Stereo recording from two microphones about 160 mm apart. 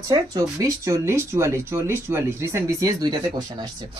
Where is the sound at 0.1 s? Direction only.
20° right (ahead or behind).